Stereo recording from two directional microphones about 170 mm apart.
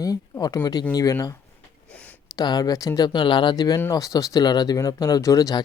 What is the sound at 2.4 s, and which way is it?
Speech, 25° left (ahead or behind).